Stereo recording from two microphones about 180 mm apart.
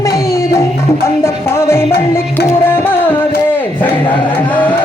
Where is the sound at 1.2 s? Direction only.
15° left (ahead or behind).